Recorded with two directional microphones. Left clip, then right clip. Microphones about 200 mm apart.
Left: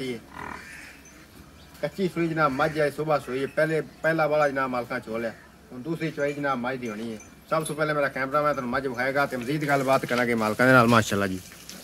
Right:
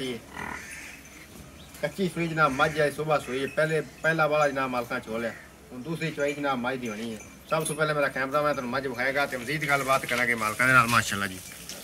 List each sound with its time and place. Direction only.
1.8 s a man's voice: 15° left (ahead or behind); by 11.3 s 55° left (ahead or behind)